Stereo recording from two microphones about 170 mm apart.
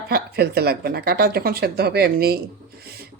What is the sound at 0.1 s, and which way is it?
Speech, 65° right (ahead or behind).